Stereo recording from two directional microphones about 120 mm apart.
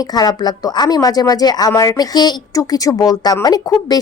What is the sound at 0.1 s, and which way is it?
A woman's voice, 35° left (ahead or behind).